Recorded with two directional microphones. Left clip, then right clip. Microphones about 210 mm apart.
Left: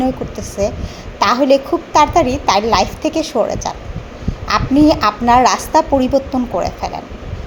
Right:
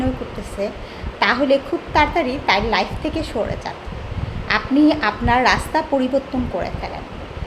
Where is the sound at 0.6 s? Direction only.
25° left (ahead or behind).